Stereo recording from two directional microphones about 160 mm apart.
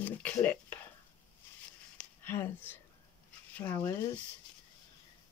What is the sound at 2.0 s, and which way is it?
Speech, 15° left (ahead or behind).